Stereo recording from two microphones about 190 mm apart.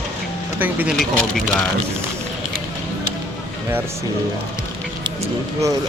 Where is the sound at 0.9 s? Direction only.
5° left (ahead or behind).